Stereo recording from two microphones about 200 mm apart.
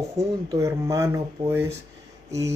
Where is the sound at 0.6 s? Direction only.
15° right (ahead or behind).